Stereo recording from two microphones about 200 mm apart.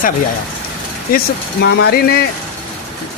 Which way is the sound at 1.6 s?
50° left (ahead or behind).